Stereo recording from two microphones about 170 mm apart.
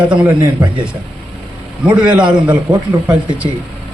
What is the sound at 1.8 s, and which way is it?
Speech, 10° right (ahead or behind).